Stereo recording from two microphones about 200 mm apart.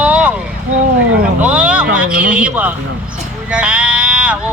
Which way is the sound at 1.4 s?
5° right (ahead or behind).